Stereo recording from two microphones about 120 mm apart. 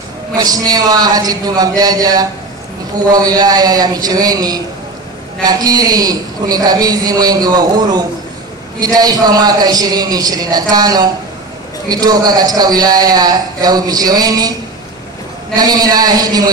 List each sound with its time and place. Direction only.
0.4 s a man's voice: 30° right (ahead or behind)
15.5 s a man's voice: 35° right (ahead or behind)